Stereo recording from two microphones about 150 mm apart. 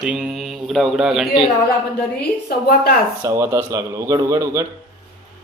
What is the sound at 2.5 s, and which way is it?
Speech, 90° left.